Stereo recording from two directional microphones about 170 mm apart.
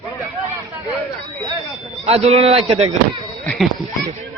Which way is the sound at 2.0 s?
35° right (ahead or behind).